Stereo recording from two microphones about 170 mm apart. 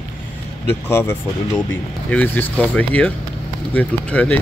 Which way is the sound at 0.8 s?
15° left (ahead or behind).